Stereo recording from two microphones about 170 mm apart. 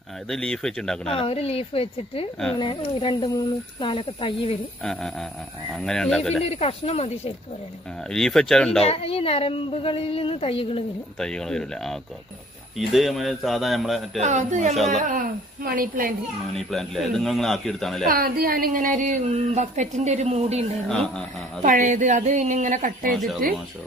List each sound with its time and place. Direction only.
0.3 s a man's voice: 5° left (ahead or behind)
1.0 s a woman's voice: 35° left (ahead or behind)
5.8 s a man's voice: 5° left (ahead or behind)
6.4 s a woman's voice: 35° left (ahead or behind)
8.1 s a man's voice: 5° left (ahead or behind)
8.8 s a woman's voice: 35° left (ahead or behind)
11.1 s a man's voice: 5° left (ahead or behind)
14.2 s speech: 45° right (ahead or behind)
16.5 s a man's voice: centre (ahead or behind)
18.0 s speech: 60° right (ahead or behind); by 20.6 s 40° right (ahead or behind)
20.9 s a man's voice: centre (ahead or behind)
21.6 s speech: 50° right (ahead or behind)
23.1 s a man's voice: centre (ahead or behind)